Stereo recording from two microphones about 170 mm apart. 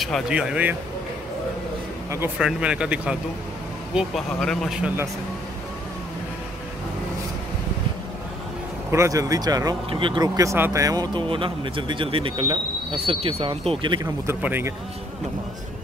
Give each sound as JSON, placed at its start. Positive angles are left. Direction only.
{"t": 0.0, "sound": "speech", "side_deg": 0}
{"t": 2.0, "sound": "speech", "side_deg": -15}
{"t": 8.9, "sound": "speech", "side_deg": -20}
{"t": 14.2, "sound": "speech", "side_deg": -15}